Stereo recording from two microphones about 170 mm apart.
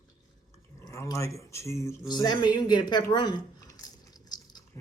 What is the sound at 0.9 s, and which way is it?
Speech, 20° left (ahead or behind).